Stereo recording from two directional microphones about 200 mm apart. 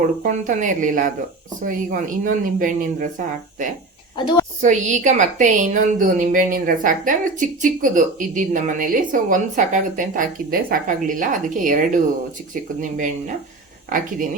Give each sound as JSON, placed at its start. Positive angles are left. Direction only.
{"t": 0.2, "sound": "a woman's voice", "side_deg": -40}
{"t": 4.2, "sound": "a woman's voice", "side_deg": 20}
{"t": 4.6, "sound": "a woman's voice", "side_deg": -35}